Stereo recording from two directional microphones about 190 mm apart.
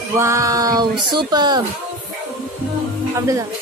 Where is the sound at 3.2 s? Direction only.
15° right (ahead or behind).